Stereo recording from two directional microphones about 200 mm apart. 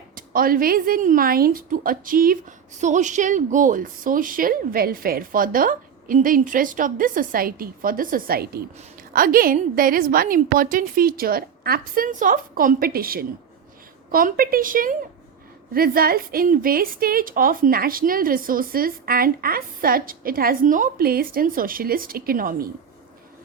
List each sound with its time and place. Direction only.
0.2 s a woman's voice: 45° right (ahead or behind)